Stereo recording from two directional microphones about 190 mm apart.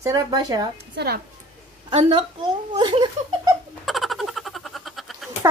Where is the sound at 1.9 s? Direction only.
25° right (ahead or behind).